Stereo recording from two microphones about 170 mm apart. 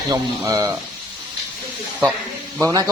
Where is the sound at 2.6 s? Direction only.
20° right (ahead or behind).